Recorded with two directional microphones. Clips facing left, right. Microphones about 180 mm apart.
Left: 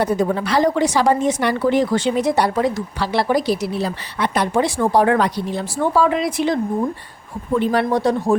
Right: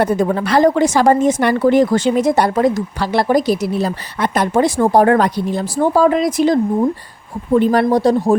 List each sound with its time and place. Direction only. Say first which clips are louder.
0.0 s a woman's voice: right 3 dB; 50° right (ahead or behind)